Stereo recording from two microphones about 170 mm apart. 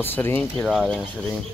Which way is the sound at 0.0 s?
10° left (ahead or behind).